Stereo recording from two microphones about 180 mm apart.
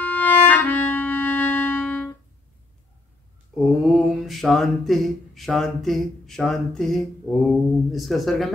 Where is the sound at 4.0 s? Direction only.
Centre (ahead or behind).